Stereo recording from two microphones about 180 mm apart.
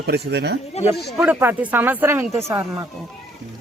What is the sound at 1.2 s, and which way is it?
Speech, 10° right (ahead or behind).